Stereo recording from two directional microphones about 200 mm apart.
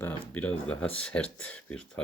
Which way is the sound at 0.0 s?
10° left (ahead or behind).